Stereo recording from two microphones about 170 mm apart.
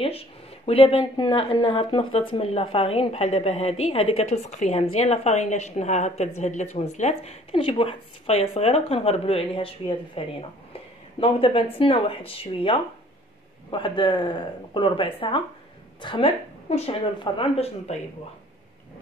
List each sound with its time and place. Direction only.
0.0 s a woman's voice: 35° left (ahead or behind)